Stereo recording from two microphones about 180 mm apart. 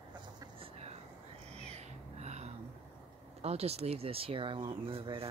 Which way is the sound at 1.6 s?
35° right (ahead or behind).